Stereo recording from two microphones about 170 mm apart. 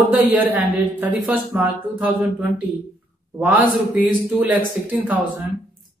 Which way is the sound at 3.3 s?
10° right (ahead or behind).